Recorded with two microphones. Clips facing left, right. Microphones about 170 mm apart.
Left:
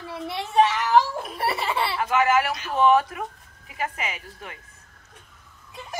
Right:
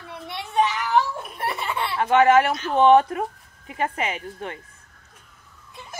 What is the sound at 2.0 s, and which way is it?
Speech, 30° right (ahead or behind).